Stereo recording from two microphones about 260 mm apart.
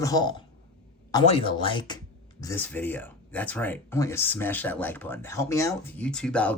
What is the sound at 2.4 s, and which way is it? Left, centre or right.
Speech, centre.